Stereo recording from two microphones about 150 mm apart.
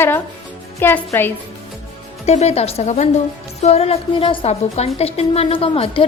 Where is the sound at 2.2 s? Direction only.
45° left (ahead or behind).